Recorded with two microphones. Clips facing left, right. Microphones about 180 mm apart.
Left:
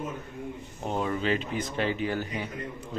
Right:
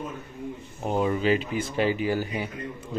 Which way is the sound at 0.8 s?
10° right (ahead or behind).